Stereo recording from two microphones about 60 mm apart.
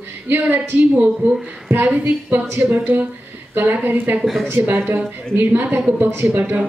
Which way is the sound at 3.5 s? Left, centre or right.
Right.